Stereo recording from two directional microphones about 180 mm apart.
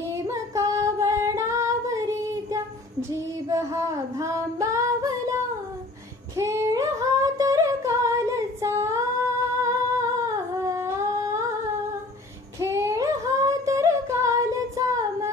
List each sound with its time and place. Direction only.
0.1 s female singing: 15° right (ahead or behind)
6.3 s singing: 15° right (ahead or behind)
9.6 s humming: 15° right (ahead or behind)
12.5 s singing: 15° right (ahead or behind)